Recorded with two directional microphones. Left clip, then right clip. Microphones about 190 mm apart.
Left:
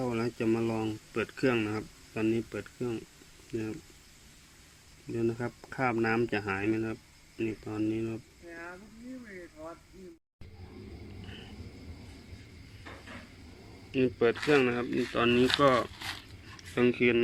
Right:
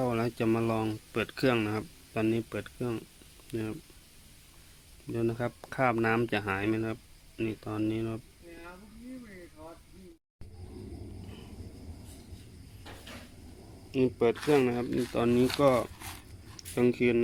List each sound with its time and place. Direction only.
0.0 s speech: 10° right (ahead or behind)
5.1 s speech: 10° right (ahead or behind)
13.9 s speech: 15° right (ahead or behind)